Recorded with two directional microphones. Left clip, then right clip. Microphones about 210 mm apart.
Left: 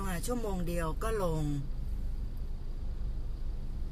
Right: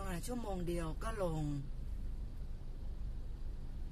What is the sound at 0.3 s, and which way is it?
Speech, 10° left (ahead or behind).